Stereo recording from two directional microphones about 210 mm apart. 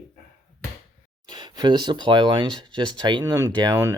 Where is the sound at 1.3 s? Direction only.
20° right (ahead or behind).